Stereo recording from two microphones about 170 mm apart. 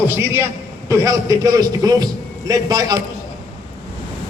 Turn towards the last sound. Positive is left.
turn(degrees=-25)  # may be behind; listen again after turning